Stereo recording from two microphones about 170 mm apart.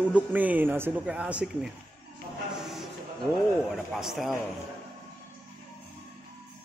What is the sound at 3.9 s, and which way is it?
Speech, centre (ahead or behind).